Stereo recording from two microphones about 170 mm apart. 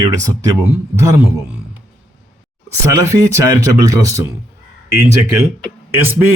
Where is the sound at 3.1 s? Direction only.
15° right (ahead or behind).